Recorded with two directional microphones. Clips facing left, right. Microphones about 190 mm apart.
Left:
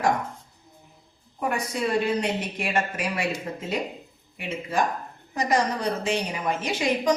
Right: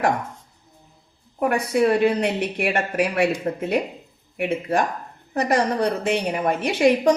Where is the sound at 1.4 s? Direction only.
60° right (ahead or behind).